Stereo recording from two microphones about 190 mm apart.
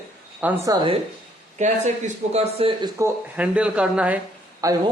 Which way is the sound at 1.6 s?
40° right (ahead or behind).